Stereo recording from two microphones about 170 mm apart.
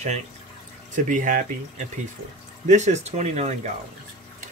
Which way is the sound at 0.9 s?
50° right (ahead or behind).